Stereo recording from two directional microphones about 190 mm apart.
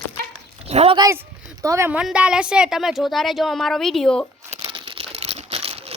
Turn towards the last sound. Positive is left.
turn(degrees=-30)  # may be behind; listen again after turning